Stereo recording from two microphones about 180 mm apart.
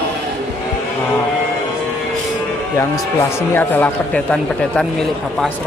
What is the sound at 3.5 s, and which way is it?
Speech, 10° left (ahead or behind).